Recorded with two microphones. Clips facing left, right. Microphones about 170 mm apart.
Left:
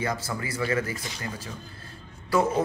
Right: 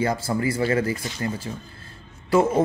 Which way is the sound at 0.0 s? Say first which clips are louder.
Right 7 dB; 30° right (ahead or behind).